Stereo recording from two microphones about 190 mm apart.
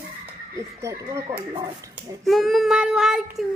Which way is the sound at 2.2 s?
Centre (ahead or behind).